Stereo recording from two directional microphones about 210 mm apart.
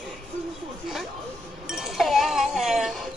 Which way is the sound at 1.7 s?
Centre (ahead or behind).